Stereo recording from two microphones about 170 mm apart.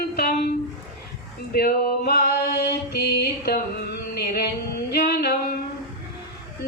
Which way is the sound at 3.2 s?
65° left (ahead or behind).